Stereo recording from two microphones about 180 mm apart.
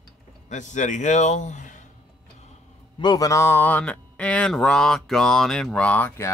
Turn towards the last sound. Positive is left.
turn(degrees=10)  # may be behind; listen again after turning